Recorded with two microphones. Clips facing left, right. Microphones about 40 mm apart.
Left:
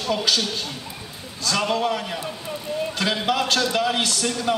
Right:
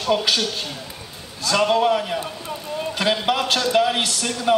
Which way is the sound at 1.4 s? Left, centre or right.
Centre.